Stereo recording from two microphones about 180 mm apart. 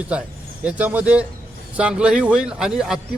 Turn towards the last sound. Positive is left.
turn(degrees=-5)  # may be behind; listen again after turning